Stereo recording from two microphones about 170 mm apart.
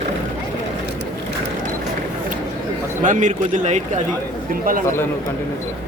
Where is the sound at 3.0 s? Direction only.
45° right (ahead or behind).